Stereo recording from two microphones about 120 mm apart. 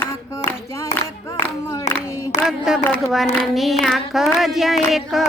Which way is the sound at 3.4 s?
Centre (ahead or behind).